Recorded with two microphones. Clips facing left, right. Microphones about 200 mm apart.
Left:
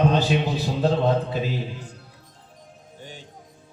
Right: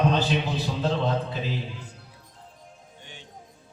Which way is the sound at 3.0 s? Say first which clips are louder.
Left 8 dB; 40° left (ahead or behind).